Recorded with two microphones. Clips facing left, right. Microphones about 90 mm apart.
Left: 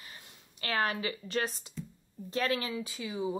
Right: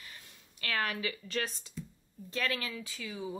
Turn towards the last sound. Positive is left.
turn(degrees=20)  # may be behind; listen again after turning